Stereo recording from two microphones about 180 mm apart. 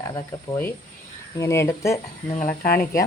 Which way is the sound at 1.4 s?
15° left (ahead or behind).